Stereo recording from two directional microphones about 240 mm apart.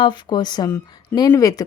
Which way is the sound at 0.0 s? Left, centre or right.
Centre.